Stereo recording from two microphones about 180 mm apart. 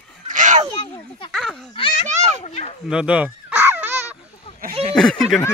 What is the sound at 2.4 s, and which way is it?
Speech, 35° left (ahead or behind).